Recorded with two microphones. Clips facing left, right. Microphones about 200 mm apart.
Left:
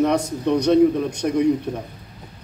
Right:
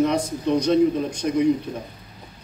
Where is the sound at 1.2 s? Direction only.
55° left (ahead or behind).